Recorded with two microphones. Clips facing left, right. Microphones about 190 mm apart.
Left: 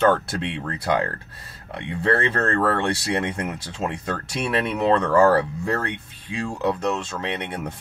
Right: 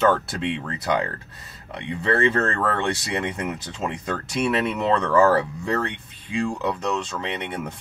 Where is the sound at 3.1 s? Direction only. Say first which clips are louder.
Left 1 dB; centre (ahead or behind).